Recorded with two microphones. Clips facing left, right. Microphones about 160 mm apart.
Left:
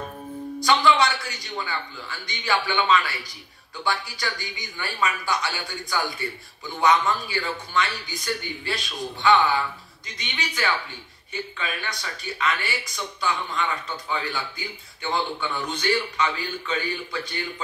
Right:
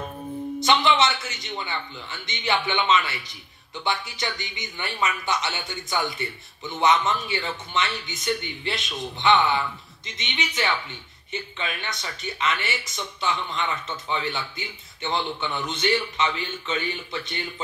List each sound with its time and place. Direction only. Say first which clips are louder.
0.6 s speech: left 1 dB; 20° right (ahead or behind)